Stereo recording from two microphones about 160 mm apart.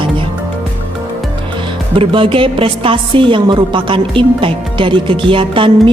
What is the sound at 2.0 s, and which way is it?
A woman's voice, 35° right (ahead or behind).